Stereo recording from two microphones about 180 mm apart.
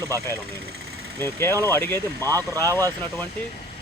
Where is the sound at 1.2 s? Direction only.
15° left (ahead or behind).